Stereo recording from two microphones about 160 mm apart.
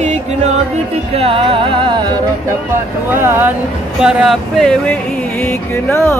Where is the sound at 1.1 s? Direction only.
35° right (ahead or behind).